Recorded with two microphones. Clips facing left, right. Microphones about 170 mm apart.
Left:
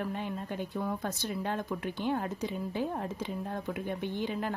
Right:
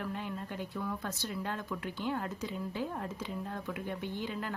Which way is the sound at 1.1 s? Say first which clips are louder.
Left 4 dB; 20° left (ahead or behind).